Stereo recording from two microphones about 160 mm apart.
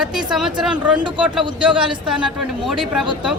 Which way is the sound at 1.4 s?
30° right (ahead or behind).